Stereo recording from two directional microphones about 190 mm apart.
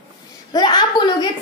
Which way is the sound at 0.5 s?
20° left (ahead or behind).